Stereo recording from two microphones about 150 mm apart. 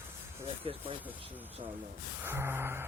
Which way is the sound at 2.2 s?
15° right (ahead or behind).